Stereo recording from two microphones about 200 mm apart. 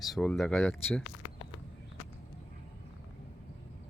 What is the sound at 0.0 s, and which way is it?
Speech, centre (ahead or behind).